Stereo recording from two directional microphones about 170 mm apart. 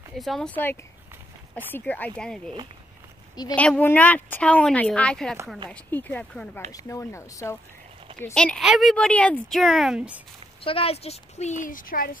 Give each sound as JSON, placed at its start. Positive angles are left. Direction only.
{"t": 0.1, "sound": "speech", "side_deg": 0}
{"t": 1.7, "sound": "a woman's voice", "side_deg": 10}
{"t": 3.5, "sound": "a woman's voice", "side_deg": 10}
{"t": 6.7, "sound": "a woman's voice", "side_deg": 20}
{"t": 10.6, "sound": "a woman's voice", "side_deg": 35}